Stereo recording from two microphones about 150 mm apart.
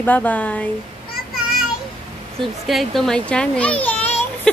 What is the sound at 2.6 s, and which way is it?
A child's voice, centre (ahead or behind).